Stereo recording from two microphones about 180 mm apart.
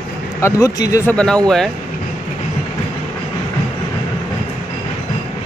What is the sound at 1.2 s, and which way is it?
Speech, 5° left (ahead or behind).